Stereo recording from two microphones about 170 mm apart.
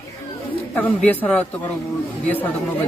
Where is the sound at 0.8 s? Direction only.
10° left (ahead or behind).